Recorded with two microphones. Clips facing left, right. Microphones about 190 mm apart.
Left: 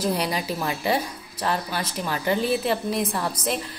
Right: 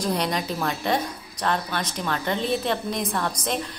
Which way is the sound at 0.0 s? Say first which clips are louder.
Even; 5° left (ahead or behind).